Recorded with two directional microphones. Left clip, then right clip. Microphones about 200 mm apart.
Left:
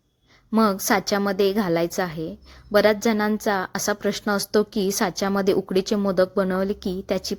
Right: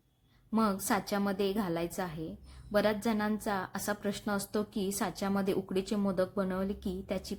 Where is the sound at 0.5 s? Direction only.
45° left (ahead or behind).